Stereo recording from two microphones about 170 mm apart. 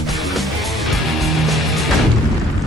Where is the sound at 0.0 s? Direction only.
Centre (ahead or behind).